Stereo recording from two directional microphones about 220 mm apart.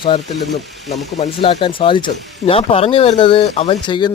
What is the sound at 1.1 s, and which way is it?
Speech, 30° left (ahead or behind).